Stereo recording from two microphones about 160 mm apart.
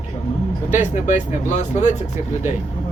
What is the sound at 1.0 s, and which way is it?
Speech, 50° left (ahead or behind).